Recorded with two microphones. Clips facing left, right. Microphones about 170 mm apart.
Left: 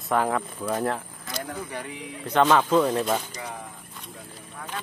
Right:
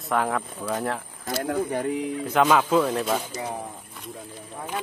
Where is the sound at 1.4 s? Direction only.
50° right (ahead or behind).